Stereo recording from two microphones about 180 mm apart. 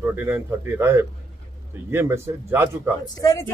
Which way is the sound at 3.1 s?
15° left (ahead or behind).